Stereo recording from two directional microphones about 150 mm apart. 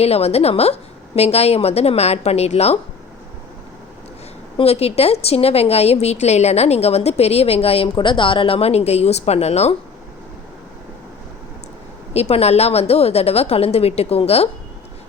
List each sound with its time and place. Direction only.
0.0 s a woman's voice: 45° left (ahead or behind)
4.5 s a woman's voice: 45° left (ahead or behind)
12.1 s a woman's voice: 45° left (ahead or behind)